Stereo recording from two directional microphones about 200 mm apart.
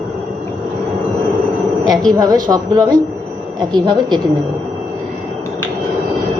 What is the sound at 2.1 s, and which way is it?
A woman's voice, 20° right (ahead or behind).